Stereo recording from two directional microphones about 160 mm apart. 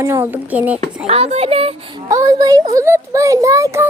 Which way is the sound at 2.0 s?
20° right (ahead or behind).